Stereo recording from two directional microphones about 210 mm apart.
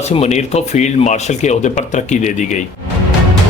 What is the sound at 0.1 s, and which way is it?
Speech, 30° left (ahead or behind).